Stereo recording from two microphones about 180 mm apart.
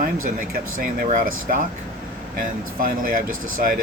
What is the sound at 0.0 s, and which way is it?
Speech, 50° right (ahead or behind).